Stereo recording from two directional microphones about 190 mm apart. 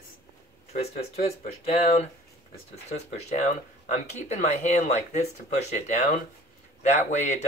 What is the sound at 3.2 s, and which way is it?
Speech, 40° left (ahead or behind).